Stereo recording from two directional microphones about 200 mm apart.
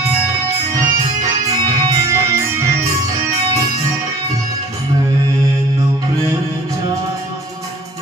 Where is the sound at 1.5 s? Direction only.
15° right (ahead or behind).